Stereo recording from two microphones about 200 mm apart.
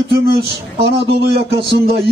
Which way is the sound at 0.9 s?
55° right (ahead or behind).